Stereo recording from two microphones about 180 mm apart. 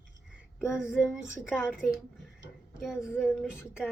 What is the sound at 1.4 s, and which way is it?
Speech, centre (ahead or behind).